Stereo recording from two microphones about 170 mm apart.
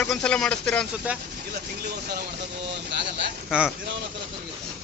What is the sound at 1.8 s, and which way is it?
Speech, 65° right (ahead or behind).